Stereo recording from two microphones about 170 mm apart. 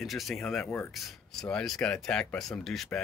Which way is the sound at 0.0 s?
Centre (ahead or behind).